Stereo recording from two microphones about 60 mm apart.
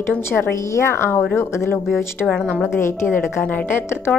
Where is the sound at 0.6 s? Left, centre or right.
Left.